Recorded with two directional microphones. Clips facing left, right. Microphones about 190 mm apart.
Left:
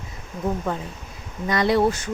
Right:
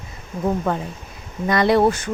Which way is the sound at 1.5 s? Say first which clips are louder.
Right 3 dB; 60° right (ahead or behind).